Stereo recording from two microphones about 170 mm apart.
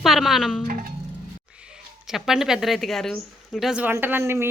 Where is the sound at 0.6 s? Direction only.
55° right (ahead or behind).